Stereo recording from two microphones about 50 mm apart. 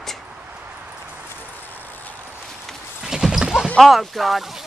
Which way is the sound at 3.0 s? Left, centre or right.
Centre.